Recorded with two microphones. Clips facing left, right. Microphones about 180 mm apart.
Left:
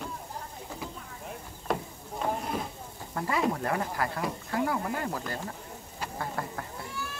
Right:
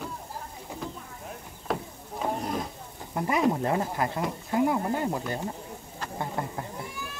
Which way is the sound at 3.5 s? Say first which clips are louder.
Right 3 dB; 20° right (ahead or behind).